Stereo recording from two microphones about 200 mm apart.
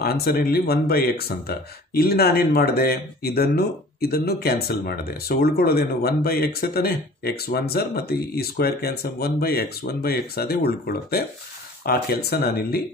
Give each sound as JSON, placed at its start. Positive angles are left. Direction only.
{"t": 0.0, "sound": "speech", "side_deg": 50}